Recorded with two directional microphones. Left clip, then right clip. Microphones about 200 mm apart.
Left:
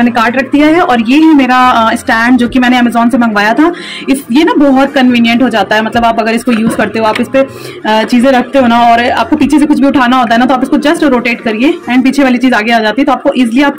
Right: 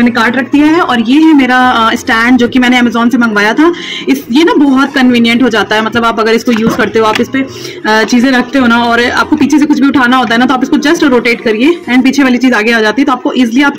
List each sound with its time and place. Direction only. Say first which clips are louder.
0.5 s speech: left 1 dB; 5° left (ahead or behind)